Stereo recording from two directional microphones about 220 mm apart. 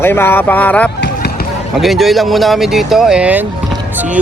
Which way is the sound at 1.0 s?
45° left (ahead or behind).